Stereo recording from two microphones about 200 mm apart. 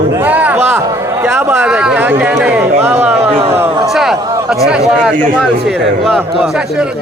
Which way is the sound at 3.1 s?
30° right (ahead or behind).